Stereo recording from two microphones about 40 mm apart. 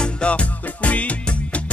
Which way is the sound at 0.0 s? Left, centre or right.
Left.